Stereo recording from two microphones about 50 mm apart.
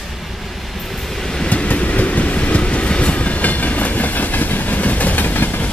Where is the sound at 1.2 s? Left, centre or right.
Centre.